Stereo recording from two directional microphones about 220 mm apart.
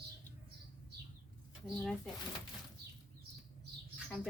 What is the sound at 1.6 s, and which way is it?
Speech, centre (ahead or behind).